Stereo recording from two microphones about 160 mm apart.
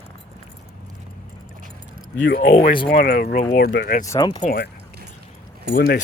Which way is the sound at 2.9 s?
80° left.